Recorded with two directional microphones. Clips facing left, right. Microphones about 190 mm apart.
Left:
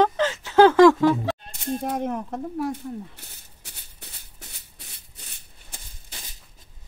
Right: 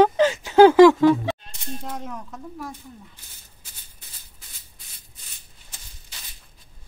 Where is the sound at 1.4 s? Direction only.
55° left (ahead or behind).